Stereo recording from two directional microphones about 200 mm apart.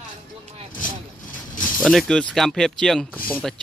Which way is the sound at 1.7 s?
Centre (ahead or behind).